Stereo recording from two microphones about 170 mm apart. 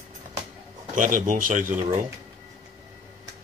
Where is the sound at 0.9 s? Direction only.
50° right (ahead or behind).